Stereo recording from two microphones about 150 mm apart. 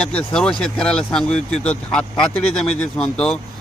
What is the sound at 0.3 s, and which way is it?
Speech, 5° left (ahead or behind).